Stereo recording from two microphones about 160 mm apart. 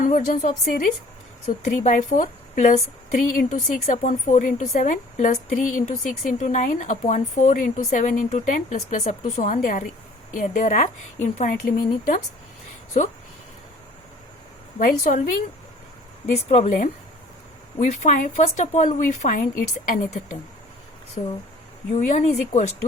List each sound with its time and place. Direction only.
0.0 s a woman's voice: 55° left (ahead or behind)
14.8 s a woman's voice: 55° left (ahead or behind)
21.9 s a woman's voice: 45° left (ahead or behind)